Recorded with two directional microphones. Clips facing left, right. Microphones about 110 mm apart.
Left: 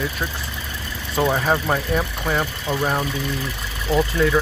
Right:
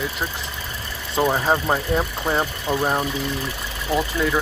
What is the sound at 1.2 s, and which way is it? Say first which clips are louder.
Speech: even; 10° right (ahead or behind).